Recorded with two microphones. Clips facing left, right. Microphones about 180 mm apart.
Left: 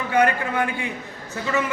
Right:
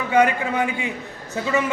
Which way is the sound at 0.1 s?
20° right (ahead or behind).